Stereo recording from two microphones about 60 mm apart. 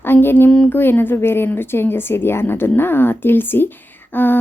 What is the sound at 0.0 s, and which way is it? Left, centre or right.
A woman's voice, left.